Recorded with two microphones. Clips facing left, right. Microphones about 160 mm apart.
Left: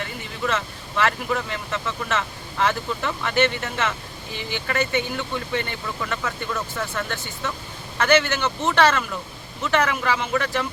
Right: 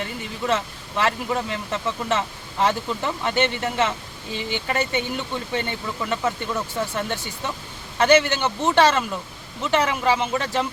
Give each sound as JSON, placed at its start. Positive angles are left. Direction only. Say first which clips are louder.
{"t": 0.4, "sound": "speech", "louder": "right 2 dB", "side_deg": -25}